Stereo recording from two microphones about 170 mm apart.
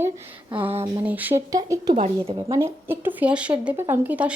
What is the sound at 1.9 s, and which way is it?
Speech, 40° right (ahead or behind).